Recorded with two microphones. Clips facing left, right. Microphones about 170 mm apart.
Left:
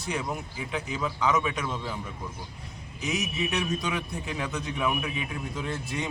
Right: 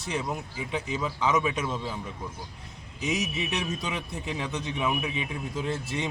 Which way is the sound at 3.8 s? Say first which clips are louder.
Left 1 dB; 20° right (ahead or behind).